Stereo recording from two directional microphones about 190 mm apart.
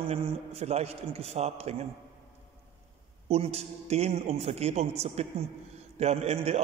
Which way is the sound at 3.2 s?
35° right (ahead or behind).